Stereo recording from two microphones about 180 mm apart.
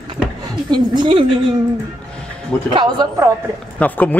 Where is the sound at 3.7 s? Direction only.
10° left (ahead or behind).